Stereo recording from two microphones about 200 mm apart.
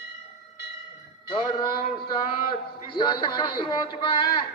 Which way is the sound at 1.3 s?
25° left (ahead or behind).